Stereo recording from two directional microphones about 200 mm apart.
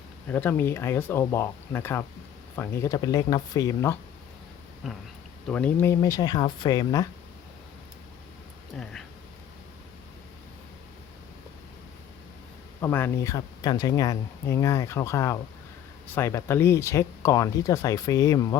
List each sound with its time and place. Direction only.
0.3 s speech: 10° left (ahead or behind)
4.8 s speech: centre (ahead or behind); by 7.1 s 20° left (ahead or behind)
8.7 s speech: centre (ahead or behind)
12.8 s speech: 10° left (ahead or behind)